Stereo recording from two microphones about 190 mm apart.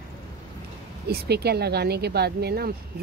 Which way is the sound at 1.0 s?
60° right (ahead or behind).